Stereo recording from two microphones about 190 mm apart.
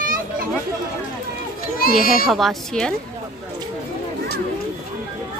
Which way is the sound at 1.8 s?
50° left (ahead or behind).